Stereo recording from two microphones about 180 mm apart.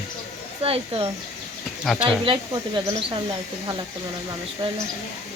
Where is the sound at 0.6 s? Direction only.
30° right (ahead or behind).